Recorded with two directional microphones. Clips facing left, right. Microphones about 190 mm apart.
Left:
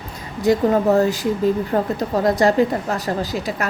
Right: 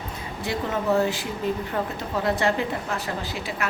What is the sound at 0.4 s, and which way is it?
A woman's voice, 40° left (ahead or behind).